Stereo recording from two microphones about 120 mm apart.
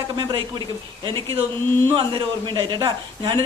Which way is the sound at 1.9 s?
40° right (ahead or behind).